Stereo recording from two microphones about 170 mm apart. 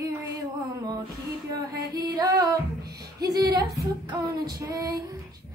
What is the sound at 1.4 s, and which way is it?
Female singing, 20° right (ahead or behind).